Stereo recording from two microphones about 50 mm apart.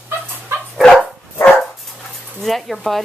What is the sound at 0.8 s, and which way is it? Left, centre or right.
Dog, centre.